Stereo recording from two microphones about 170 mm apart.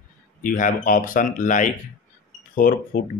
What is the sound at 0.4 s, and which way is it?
Speech, 50° left (ahead or behind).